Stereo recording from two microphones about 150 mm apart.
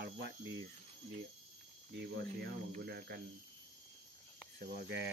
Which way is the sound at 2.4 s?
90° right.